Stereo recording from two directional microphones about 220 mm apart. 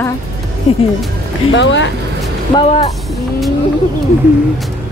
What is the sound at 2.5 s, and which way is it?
Speech, 25° left (ahead or behind).